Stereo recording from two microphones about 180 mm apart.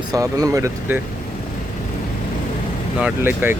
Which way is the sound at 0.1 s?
20° right (ahead or behind).